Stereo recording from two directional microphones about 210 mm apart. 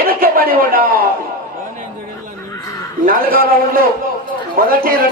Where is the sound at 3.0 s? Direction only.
45° right (ahead or behind).